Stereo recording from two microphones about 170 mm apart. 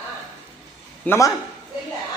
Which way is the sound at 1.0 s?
15° left (ahead or behind).